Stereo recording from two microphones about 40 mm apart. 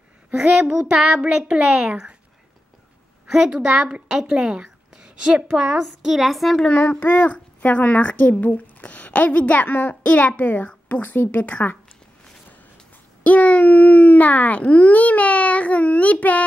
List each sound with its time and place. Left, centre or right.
0.4 s a child's voice: centre
3.6 s a woman's voice: centre
6.8 s a woman's voice: left
13.2 s speech: left